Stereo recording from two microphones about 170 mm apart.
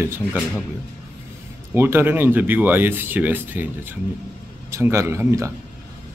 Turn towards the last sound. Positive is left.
turn(degrees=-15)  # may be behind; listen again after turning